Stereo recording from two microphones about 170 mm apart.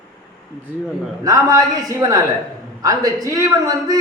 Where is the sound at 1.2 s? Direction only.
20° right (ahead or behind).